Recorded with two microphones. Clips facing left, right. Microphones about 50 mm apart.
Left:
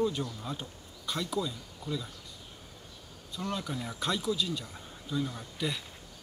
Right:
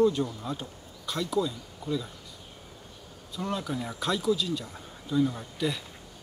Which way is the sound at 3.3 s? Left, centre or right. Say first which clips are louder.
Right 3 dB; centre.